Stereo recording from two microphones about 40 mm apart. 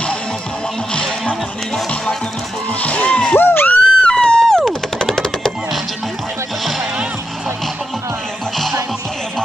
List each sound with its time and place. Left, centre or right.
0.9 s music: left
2.8 s a sound: left
3.3 s screaming: left
3.8 s machine gun: centre